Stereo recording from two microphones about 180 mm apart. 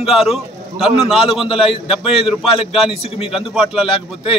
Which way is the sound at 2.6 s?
30° left (ahead or behind).